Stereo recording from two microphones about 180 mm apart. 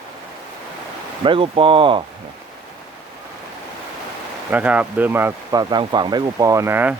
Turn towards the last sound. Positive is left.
turn(degrees=-15)  # may be behind; listen again after turning